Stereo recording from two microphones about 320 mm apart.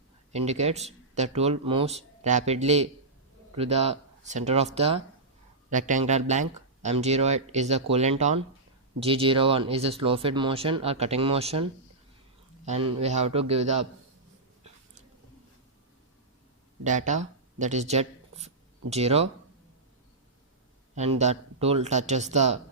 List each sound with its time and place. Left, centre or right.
0.3 s speech: right
16.8 s speech: right
20.9 s speech: right